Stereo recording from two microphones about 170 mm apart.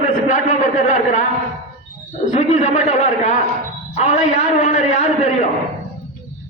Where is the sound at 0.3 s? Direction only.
45° left (ahead or behind).